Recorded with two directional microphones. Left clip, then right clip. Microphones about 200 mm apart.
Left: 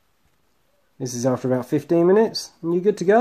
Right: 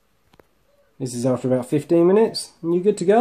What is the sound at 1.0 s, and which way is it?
Speech, 30° left (ahead or behind).